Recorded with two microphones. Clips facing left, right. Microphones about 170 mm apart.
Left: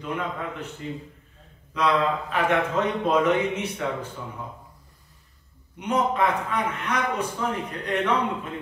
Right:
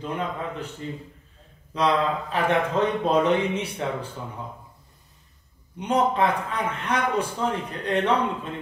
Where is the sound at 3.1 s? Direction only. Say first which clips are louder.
Left 1 dB; 30° right (ahead or behind).